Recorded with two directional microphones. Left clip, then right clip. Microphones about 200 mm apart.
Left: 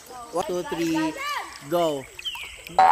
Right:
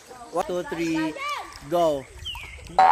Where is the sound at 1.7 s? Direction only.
20° right (ahead or behind).